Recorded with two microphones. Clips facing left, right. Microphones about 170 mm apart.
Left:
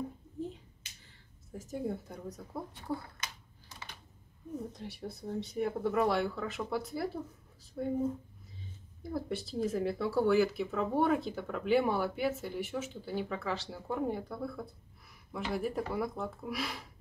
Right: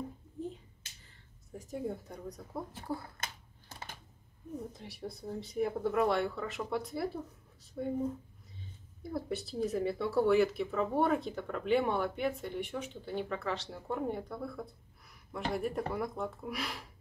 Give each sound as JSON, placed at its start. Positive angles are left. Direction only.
{"t": 1.0, "sound": "a woman's voice", "side_deg": 0}
{"t": 3.2, "sound": "a sound", "side_deg": -50}
{"t": 4.7, "sound": "speech", "side_deg": 0}
{"t": 9.0, "sound": "speech", "side_deg": 0}